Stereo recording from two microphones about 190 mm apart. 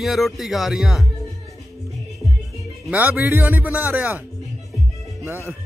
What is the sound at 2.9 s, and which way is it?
Speech, 10° right (ahead or behind).